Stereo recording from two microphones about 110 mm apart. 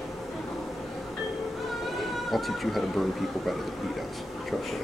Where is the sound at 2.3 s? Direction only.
Centre (ahead or behind).